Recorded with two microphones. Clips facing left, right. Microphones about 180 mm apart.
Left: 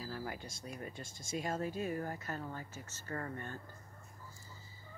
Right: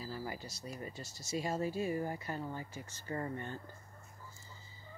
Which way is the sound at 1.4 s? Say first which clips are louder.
Right 2 dB; 10° right (ahead or behind).